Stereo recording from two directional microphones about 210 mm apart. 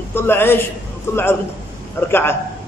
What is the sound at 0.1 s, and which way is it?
A man's voice, 10° left (ahead or behind).